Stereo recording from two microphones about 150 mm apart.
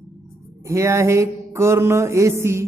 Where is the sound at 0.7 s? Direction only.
20° right (ahead or behind).